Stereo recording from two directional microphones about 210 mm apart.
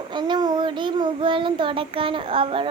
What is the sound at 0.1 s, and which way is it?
Child singing, 20° right (ahead or behind).